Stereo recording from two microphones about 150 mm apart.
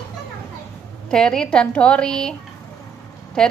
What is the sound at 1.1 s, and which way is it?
A woman's voice, 5° left (ahead or behind).